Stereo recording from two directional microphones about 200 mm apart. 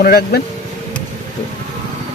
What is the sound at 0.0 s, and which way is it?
Speech, 50° left (ahead or behind).